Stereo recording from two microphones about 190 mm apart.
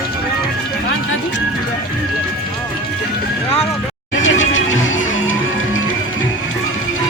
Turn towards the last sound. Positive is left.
turn(degrees=90)